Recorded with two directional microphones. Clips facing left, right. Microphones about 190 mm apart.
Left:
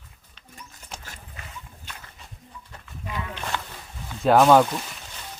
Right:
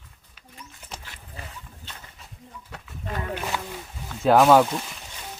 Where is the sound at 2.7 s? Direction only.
70° right (ahead or behind).